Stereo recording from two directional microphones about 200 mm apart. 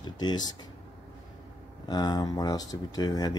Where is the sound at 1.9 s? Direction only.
20° left (ahead or behind).